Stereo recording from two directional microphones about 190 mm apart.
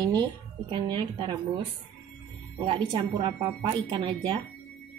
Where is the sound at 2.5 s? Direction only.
25° right (ahead or behind).